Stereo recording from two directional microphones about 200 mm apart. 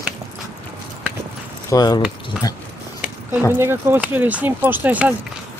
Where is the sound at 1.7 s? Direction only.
20° left (ahead or behind).